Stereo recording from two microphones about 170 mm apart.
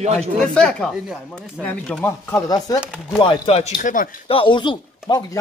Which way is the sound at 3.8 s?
50° left (ahead or behind).